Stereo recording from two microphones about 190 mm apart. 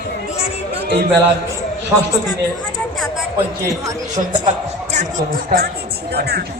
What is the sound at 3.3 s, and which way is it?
A man's voice, 15° right (ahead or behind).